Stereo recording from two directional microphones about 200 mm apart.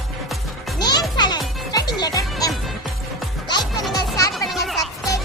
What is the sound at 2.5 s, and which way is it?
Music, centre (ahead or behind).